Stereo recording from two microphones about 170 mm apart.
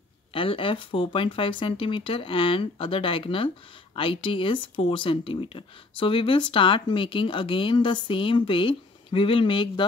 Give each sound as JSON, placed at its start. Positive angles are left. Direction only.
{"t": 0.3, "sound": "speech", "side_deg": 30}